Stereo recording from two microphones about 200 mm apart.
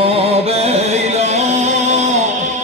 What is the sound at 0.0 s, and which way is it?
Music, 30° right (ahead or behind).